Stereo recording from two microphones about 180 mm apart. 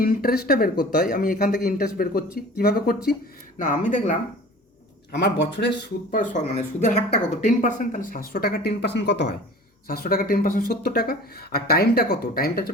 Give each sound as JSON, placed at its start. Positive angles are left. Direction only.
{"t": 0.0, "sound": "speech", "side_deg": 55}
{"t": 3.6, "sound": "speech", "side_deg": 45}
{"t": 5.1, "sound": "speech", "side_deg": 70}
{"t": 6.1, "sound": "speech", "side_deg": 40}
{"t": 9.8, "sound": "speech", "side_deg": 55}